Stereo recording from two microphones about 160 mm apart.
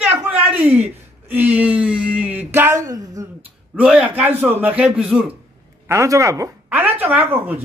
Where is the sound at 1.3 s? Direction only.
10° right (ahead or behind).